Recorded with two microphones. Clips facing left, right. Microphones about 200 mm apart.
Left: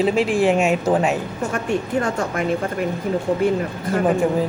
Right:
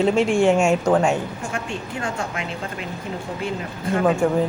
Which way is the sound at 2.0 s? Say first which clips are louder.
Left 6 dB; 55° left (ahead or behind).